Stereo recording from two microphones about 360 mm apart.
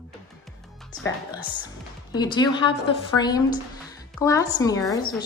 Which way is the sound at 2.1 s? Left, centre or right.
Centre.